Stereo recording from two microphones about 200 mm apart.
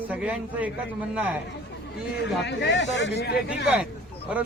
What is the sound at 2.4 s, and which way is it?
Speech, 60° left (ahead or behind).